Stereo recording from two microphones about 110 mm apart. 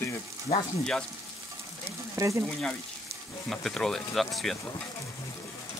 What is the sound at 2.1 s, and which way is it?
Speech, 30° right (ahead or behind).